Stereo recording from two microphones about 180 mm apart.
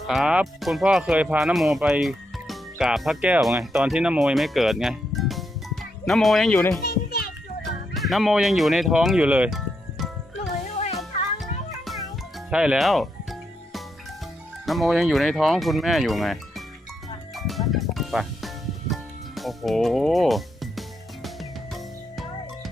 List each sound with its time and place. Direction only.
0.1 s speech: 5° right (ahead or behind)
6.8 s children playing: 60° left (ahead or behind)
7.6 s speech: centre (ahead or behind)
12.5 s speech: 5° right (ahead or behind)
14.7 s speech: centre (ahead or behind)
17.3 s music: centre (ahead or behind)